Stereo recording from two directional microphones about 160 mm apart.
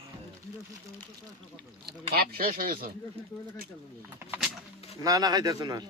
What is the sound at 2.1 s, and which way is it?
Speech, 70° right (ahead or behind).